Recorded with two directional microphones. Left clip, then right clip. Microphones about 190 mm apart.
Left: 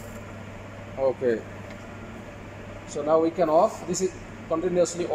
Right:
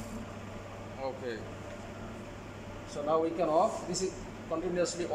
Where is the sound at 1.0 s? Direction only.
45° left (ahead or behind).